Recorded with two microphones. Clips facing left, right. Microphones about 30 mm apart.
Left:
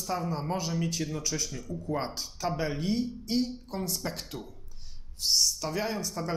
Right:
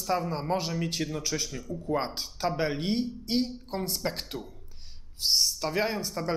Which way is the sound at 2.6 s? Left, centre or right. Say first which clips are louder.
Right 1 dB; right.